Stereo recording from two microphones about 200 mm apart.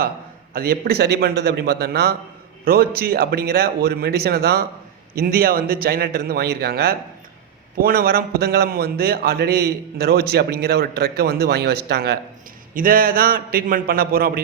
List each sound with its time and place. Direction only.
0.5 s a man's voice: 50° right (ahead or behind)